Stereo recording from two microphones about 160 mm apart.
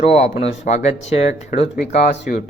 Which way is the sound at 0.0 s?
40° left (ahead or behind).